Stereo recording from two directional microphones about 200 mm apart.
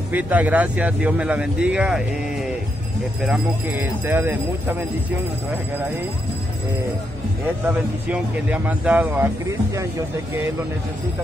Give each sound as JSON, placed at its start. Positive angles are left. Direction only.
{"t": 0.1, "sound": "speech", "side_deg": -5}
{"t": 7.6, "sound": "speech", "side_deg": -5}